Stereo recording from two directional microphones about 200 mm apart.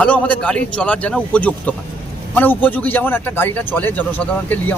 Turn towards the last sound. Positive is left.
turn(degrees=10)  # may be behind; listen again after turning